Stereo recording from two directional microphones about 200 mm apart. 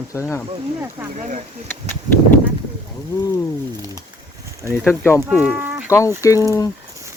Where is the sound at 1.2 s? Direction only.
40° right (ahead or behind).